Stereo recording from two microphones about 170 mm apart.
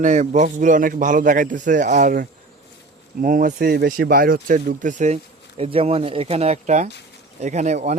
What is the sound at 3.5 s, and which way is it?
Speech, 70° right (ahead or behind).